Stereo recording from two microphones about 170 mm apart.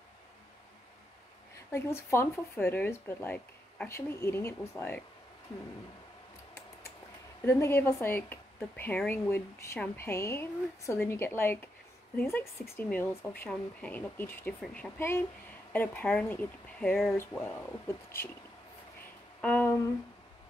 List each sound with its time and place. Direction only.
1.7 s speech: 15° left (ahead or behind)
7.4 s speech: 15° left (ahead or behind)
19.4 s a sound: 10° left (ahead or behind)